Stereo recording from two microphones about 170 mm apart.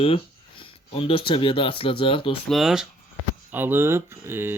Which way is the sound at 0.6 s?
30° left (ahead or behind).